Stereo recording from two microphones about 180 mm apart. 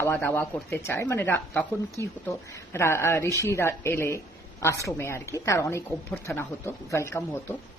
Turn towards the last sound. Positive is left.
turn(degrees=15)  # may be behind; listen again after turning